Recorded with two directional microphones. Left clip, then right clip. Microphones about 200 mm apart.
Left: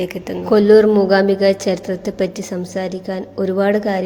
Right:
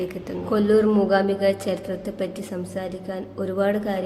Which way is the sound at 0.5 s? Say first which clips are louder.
Left 9 dB; 30° left (ahead or behind).